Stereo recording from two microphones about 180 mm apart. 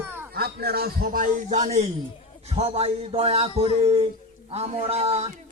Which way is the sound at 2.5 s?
35° right (ahead or behind).